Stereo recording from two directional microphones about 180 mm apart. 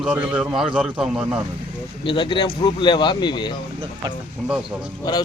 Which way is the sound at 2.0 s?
25° left (ahead or behind).